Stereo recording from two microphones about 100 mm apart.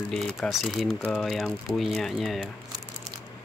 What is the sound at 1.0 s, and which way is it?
Speech, 10° left (ahead or behind).